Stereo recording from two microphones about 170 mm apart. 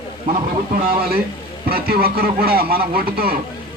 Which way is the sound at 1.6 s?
65° right (ahead or behind).